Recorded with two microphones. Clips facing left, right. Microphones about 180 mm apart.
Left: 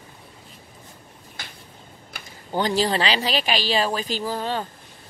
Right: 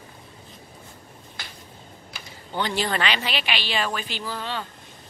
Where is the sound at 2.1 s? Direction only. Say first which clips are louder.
Left 5 dB; 40° left (ahead or behind).